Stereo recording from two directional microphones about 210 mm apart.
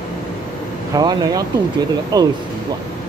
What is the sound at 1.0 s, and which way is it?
Speech, 20° right (ahead or behind).